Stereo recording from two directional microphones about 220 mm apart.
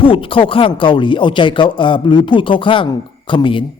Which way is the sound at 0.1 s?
25° left (ahead or behind).